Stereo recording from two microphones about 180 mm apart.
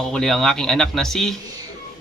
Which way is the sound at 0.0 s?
5° left (ahead or behind).